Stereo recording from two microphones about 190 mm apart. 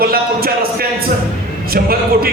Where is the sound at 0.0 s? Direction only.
50° right (ahead or behind).